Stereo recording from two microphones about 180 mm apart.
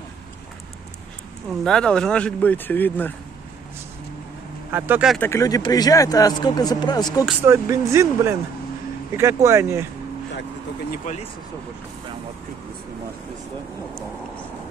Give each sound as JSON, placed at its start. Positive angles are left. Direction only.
{"t": 1.5, "sound": "speech", "side_deg": 5}
{"t": 4.6, "sound": "speech", "side_deg": -10}
{"t": 5.1, "sound": "speech", "side_deg": 15}
{"t": 7.4, "sound": "speech", "side_deg": -15}
{"t": 11.1, "sound": "speech", "side_deg": 45}